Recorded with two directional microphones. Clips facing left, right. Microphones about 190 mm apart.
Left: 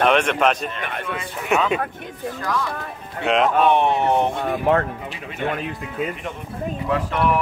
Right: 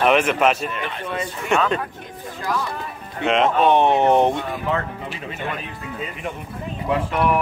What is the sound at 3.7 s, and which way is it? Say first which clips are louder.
Speech: right 3 dB; 20° right (ahead or behind).